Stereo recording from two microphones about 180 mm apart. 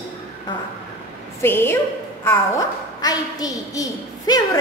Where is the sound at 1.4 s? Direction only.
10° left (ahead or behind).